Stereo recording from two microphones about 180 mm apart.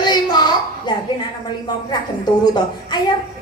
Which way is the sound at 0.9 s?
25° left (ahead or behind).